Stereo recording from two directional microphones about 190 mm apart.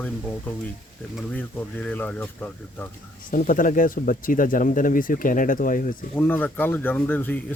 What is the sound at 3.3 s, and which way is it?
Speech, 45° left (ahead or behind).